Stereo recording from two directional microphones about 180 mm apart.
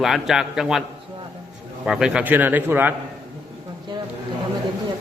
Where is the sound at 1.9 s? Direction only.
5° right (ahead or behind).